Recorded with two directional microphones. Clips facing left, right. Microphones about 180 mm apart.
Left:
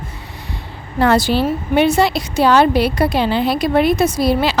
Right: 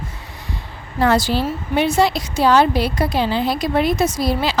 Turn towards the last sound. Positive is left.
turn(degrees=65)  # may be behind; listen again after turning